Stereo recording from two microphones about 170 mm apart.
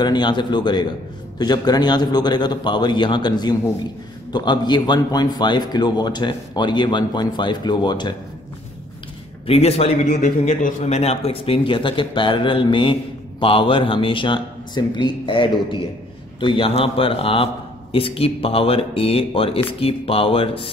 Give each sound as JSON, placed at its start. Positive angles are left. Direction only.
{"t": 0.0, "sound": "a man's voice", "side_deg": 25}
{"t": 9.5, "sound": "a man's voice", "side_deg": 35}